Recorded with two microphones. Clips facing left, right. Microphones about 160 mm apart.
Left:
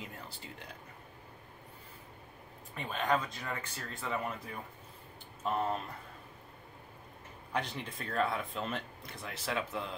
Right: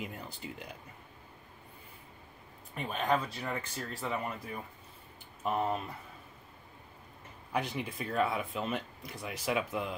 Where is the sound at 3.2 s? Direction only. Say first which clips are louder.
Right 3 dB; 35° right (ahead or behind).